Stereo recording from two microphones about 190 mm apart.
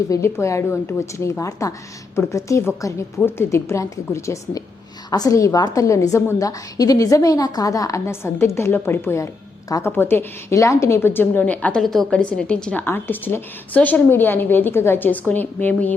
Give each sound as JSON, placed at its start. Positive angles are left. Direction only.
{"t": 0.1, "sound": "a woman's voice", "side_deg": 15}